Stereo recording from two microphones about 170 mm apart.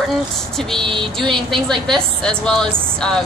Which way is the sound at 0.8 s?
30° right (ahead or behind).